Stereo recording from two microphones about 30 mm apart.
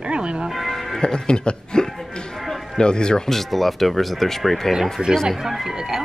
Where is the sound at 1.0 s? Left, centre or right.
Left.